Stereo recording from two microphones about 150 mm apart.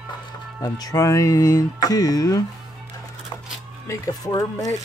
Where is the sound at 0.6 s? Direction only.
25° left (ahead or behind).